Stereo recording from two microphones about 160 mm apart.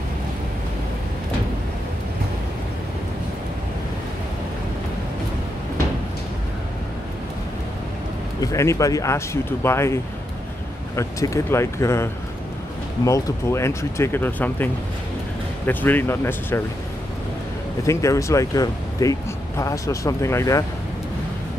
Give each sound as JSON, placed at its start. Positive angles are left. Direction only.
{"t": 8.4, "sound": "speech", "side_deg": 20}
{"t": 11.0, "sound": "speech", "side_deg": 20}
{"t": 17.8, "sound": "speech", "side_deg": 20}